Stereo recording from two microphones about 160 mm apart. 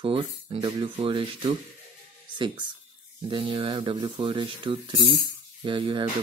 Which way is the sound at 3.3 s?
30° right (ahead or behind).